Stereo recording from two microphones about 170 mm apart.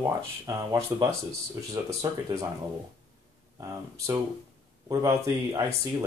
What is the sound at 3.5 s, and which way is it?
Speech, 20° right (ahead or behind).